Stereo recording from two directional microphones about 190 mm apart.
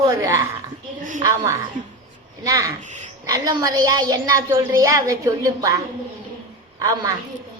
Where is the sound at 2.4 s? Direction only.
20° right (ahead or behind).